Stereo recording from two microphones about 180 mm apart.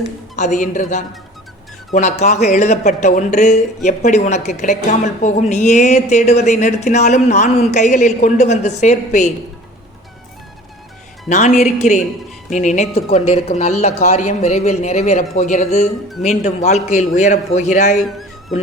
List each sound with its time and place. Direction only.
0.3 s a man's voice: 45° left (ahead or behind)
11.3 s a woman's voice: 40° left (ahead or behind)
18.0 s music: centre (ahead or behind)